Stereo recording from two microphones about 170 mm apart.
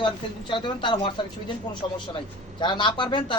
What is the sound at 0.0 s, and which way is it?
A man's voice, 30° left (ahead or behind).